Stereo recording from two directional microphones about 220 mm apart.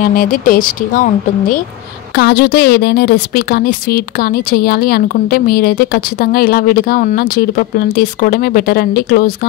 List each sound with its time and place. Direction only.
0.0 s a woman's voice: 40° left (ahead or behind)